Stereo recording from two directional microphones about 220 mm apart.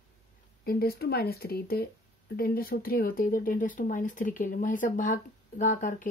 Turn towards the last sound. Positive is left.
turn(degrees=35)  # may be behind; listen again after turning